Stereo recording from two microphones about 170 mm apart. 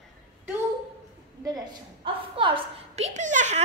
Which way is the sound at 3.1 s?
45° right (ahead or behind).